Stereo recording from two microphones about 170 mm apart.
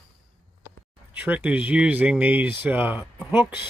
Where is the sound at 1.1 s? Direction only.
10° right (ahead or behind).